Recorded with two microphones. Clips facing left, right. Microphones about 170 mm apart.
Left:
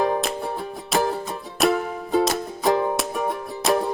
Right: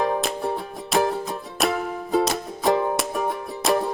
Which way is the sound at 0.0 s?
Centre (ahead or behind).